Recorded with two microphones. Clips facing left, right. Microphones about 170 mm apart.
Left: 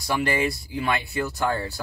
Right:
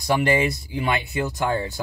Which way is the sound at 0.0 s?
20° right (ahead or behind).